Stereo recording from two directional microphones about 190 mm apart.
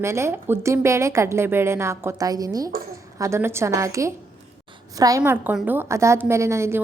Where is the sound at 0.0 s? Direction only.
15° right (ahead or behind).